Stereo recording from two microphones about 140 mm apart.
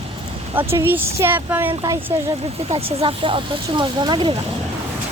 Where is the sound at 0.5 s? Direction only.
15° right (ahead or behind).